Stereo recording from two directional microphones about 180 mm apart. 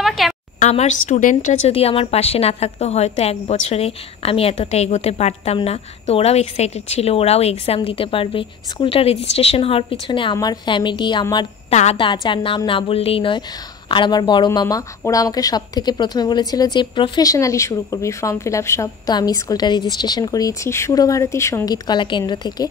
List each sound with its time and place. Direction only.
0.0 s a sound: centre (ahead or behind)
0.6 s a woman's voice: 40° left (ahead or behind)
11.7 s a woman's voice: 35° left (ahead or behind)